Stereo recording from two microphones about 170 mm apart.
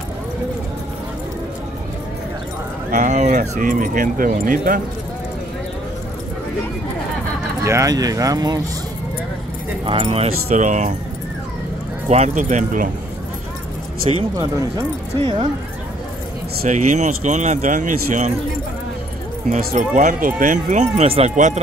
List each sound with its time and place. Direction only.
2.9 s speech: 45° right (ahead or behind)
7.6 s speech: 20° right (ahead or behind)
9.8 s speech: 35° right (ahead or behind)
12.1 s speech: 45° right (ahead or behind)
14.3 s speech: 20° right (ahead or behind)
16.6 s speech: 45° right (ahead or behind)
19.5 s speech: 45° right (ahead or behind)